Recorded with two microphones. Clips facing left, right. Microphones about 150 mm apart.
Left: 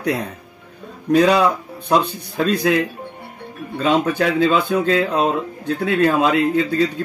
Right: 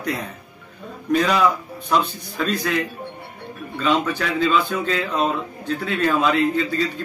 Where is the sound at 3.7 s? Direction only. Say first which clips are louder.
Left 4 dB; 50° left (ahead or behind).